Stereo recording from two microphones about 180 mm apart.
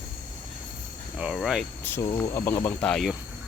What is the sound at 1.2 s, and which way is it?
Speech, centre (ahead or behind).